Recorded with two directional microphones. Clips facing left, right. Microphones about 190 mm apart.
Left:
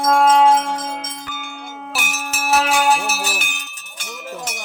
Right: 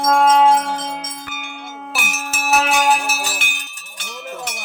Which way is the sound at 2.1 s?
Centre (ahead or behind).